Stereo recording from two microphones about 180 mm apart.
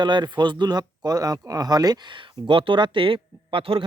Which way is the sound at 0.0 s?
25° right (ahead or behind).